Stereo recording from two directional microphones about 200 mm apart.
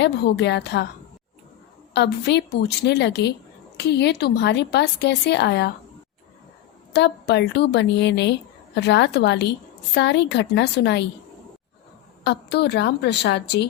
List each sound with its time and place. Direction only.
0.0 s a woman's voice: 60° left (ahead or behind)
1.9 s a woman's voice: 60° left (ahead or behind)
6.9 s a woman's voice: 60° left (ahead or behind)
12.2 s a woman's voice: 60° left (ahead or behind)